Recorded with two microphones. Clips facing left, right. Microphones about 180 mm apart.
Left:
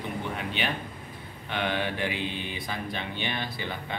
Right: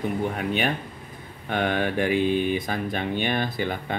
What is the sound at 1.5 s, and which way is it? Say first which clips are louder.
A man's voice: right 6 dB; 50° right (ahead or behind).